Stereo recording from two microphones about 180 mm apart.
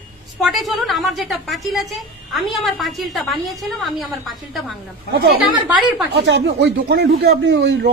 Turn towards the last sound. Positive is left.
turn(degrees=-80)